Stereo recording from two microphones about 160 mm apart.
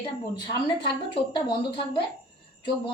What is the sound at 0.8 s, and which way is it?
A woman's voice, 30° left (ahead or behind).